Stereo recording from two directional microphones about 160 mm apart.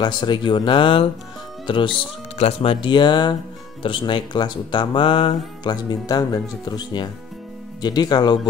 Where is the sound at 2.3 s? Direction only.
40° left (ahead or behind).